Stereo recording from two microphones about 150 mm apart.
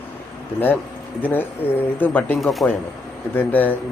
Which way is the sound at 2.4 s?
Centre (ahead or behind).